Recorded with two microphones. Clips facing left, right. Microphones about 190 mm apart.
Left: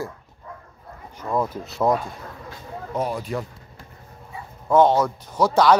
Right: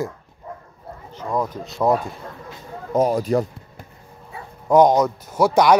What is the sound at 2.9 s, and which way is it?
Speech, 40° right (ahead or behind).